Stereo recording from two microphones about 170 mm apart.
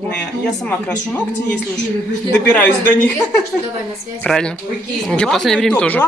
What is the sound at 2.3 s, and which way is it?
A woman's voice, 5° left (ahead or behind).